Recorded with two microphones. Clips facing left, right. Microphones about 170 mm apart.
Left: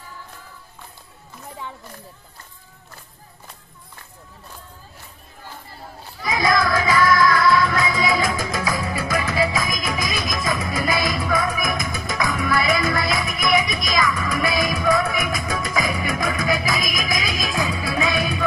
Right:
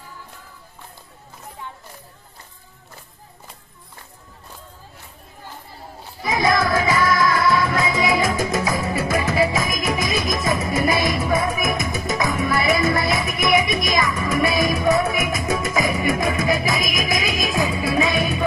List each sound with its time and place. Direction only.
6.2 s music: 30° right (ahead or behind)